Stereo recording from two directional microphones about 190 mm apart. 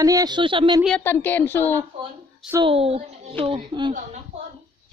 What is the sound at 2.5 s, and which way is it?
A woman's voice, 25° right (ahead or behind).